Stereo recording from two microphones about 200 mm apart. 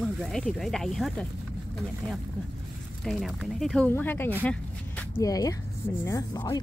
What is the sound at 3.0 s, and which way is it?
Speech, centre (ahead or behind).